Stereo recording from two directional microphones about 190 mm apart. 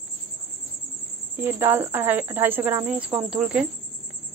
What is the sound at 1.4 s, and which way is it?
Speech, 10° right (ahead or behind).